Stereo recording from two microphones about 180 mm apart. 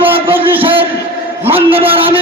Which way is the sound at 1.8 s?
30° right (ahead or behind).